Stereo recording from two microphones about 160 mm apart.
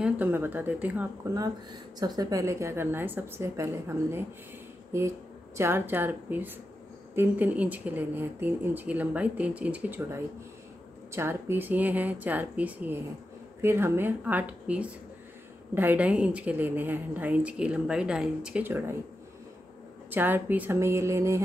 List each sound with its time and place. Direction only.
0.0 s a woman's voice: 10° right (ahead or behind)
1.3 s a woman's voice: 25° right (ahead or behind)
5.6 s a woman's voice: 15° right (ahead or behind)
20.1 s a woman's voice: 15° right (ahead or behind)